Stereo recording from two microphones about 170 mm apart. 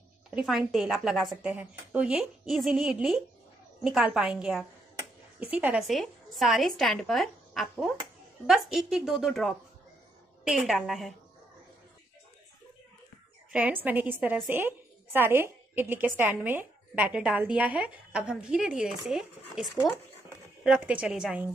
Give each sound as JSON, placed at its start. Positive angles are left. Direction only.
{"t": 0.3, "sound": "a woman's voice", "side_deg": -5}
{"t": 13.5, "sound": "a woman's voice", "side_deg": -5}